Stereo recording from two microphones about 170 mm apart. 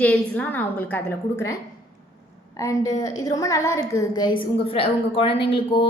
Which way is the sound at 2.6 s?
20° left (ahead or behind).